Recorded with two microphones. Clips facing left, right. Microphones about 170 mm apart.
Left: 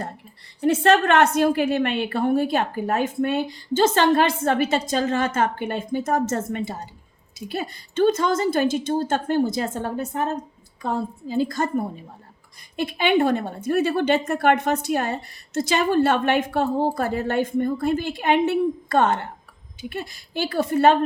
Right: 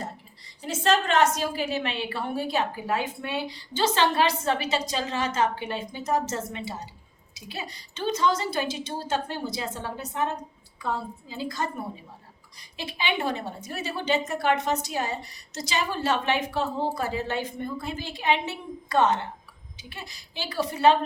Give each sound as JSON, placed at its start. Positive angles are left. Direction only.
{"t": 0.6, "sound": "a woman's voice", "side_deg": 60}
{"t": 12.7, "sound": "a woman's voice", "side_deg": 55}